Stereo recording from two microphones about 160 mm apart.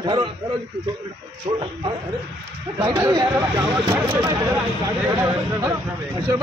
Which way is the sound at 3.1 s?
25° right (ahead or behind).